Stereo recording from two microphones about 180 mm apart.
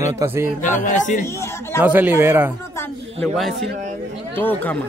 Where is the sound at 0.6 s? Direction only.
45° left (ahead or behind).